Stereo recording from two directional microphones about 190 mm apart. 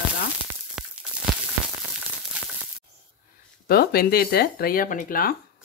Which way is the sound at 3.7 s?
55° left (ahead or behind).